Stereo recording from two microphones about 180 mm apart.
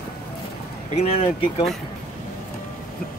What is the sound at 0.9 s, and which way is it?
Speech, 35° left (ahead or behind).